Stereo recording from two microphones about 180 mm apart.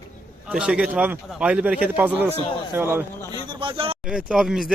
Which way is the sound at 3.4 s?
25° right (ahead or behind).